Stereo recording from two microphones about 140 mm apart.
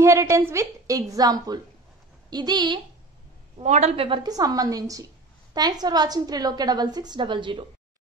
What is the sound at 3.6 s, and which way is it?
Speech, 55° right (ahead or behind).